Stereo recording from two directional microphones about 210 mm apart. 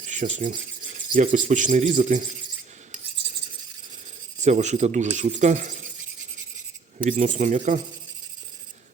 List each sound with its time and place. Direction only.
0.0 s speech: 35° right (ahead or behind)
4.4 s speech: 35° right (ahead or behind)
7.0 s speech: 35° right (ahead or behind)